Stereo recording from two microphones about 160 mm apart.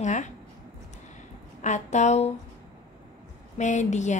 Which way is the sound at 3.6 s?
45° left (ahead or behind).